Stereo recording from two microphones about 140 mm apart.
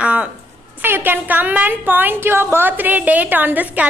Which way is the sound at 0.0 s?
10° right (ahead or behind).